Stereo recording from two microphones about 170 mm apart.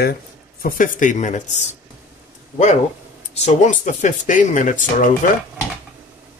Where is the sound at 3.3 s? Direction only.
45° left (ahead or behind).